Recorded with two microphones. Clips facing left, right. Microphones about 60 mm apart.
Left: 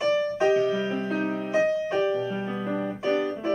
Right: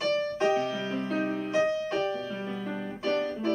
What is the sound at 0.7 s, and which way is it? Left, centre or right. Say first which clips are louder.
Music: left 3 dB; centre.